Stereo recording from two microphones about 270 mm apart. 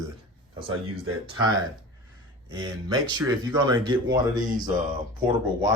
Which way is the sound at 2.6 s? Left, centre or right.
Centre.